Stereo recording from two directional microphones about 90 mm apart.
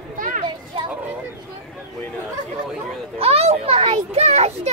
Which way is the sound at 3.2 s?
90° right.